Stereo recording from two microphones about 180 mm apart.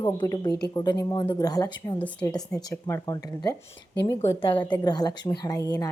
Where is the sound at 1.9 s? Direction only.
10° left (ahead or behind).